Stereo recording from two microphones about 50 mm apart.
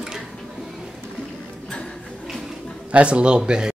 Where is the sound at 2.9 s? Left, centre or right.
Right.